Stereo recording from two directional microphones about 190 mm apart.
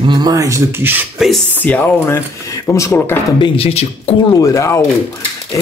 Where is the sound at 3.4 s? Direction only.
30° left (ahead or behind).